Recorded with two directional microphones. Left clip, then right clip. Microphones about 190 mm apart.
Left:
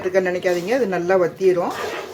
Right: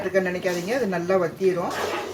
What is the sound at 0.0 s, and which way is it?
Speech, 35° left (ahead or behind).